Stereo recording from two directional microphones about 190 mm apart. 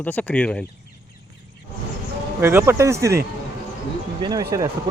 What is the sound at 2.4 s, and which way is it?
Speech, 10° right (ahead or behind).